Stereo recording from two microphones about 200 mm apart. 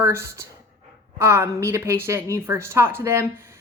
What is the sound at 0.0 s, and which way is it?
Speech, 10° right (ahead or behind).